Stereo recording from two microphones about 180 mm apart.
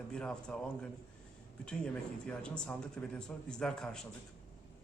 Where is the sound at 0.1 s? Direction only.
5° left (ahead or behind).